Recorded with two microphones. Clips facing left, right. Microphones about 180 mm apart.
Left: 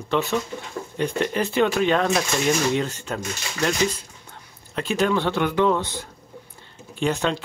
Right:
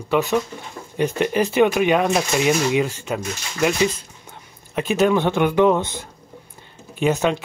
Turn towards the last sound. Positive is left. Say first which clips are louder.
# right 4 dB
turn(degrees=-20)  # may be behind; listen again after turning